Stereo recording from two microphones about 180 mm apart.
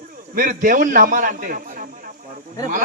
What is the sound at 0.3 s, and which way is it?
Speech, 50° right (ahead or behind).